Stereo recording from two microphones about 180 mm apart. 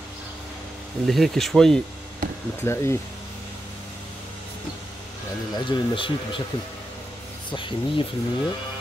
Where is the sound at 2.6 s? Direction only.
15° left (ahead or behind).